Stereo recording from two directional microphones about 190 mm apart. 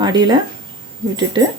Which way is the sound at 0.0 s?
20° right (ahead or behind).